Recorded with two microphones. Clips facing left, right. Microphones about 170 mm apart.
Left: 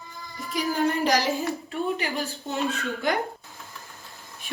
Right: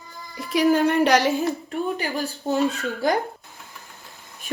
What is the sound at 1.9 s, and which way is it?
Speech, 35° right (ahead or behind).